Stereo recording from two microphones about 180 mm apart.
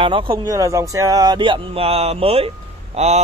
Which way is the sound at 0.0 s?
30° right (ahead or behind).